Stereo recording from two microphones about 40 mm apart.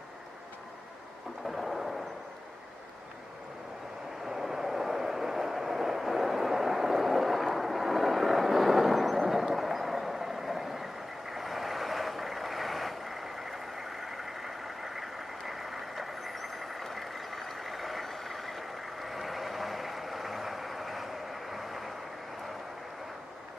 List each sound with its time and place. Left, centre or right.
1.4 s thunder: centre
4.3 s vehicle: centre